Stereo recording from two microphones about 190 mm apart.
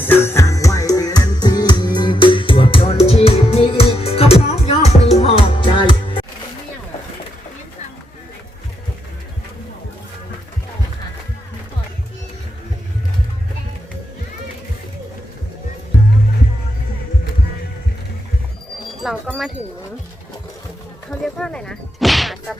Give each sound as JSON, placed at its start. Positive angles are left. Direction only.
{"t": 0.0, "sound": "music", "side_deg": 10}
{"t": 19.0, "sound": "wind chime", "side_deg": -5}
{"t": 21.1, "sound": "a sound", "side_deg": 5}